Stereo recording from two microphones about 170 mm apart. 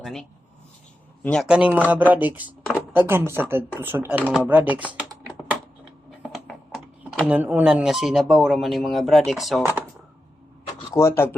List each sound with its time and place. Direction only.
0.0 s speech: centre (ahead or behind)
1.5 s speech: 5° right (ahead or behind)
6.3 s speech: centre (ahead or behind)
10.9 s speech: 15° left (ahead or behind)